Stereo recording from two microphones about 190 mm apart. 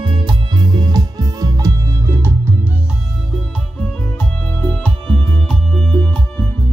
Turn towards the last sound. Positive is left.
turn(degrees=5)  # may be behind; listen again after turning